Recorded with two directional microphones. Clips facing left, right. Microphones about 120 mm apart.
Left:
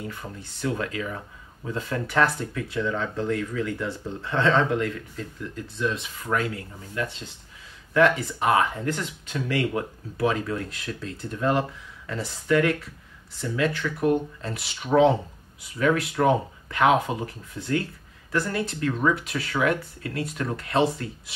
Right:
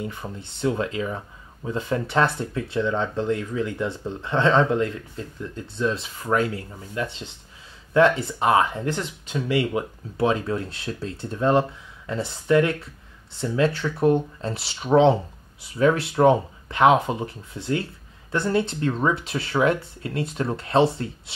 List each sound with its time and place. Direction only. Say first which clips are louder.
0.0 s speech: right 3 dB; 20° right (ahead or behind)